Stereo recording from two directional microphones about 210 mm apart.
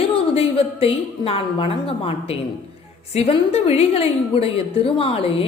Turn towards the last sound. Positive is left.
turn(degrees=25)  # may be behind; listen again after turning